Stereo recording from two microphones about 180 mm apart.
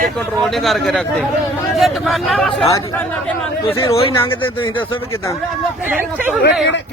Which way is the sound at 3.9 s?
30° left (ahead or behind).